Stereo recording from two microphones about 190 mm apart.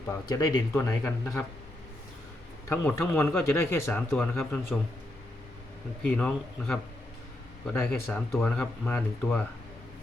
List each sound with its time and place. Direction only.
0.3 s speech: 20° left (ahead or behind)
2.6 s speech: 15° left (ahead or behind)
6.0 s speech: 5° left (ahead or behind)